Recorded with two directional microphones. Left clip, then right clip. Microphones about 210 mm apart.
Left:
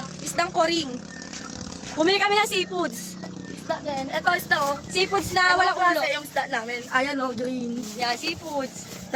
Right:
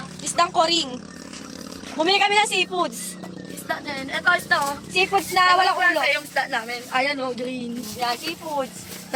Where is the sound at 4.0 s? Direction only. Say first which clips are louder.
Right 4 dB; centre (ahead or behind).